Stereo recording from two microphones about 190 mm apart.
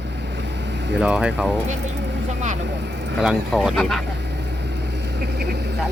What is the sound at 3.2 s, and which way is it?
Speech, centre (ahead or behind).